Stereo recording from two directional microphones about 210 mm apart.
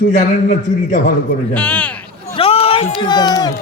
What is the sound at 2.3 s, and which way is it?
Speech, 25° left (ahead or behind).